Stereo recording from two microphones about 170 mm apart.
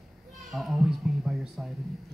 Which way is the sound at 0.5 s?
Centre (ahead or behind).